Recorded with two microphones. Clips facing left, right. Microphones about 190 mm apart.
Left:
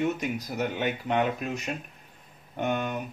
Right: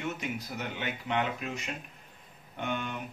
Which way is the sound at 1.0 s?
45° left (ahead or behind).